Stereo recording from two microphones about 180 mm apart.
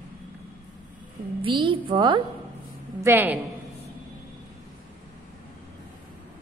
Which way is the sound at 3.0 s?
10° right (ahead or behind).